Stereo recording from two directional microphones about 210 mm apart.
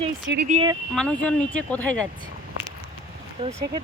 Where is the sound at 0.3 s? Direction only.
55° right (ahead or behind).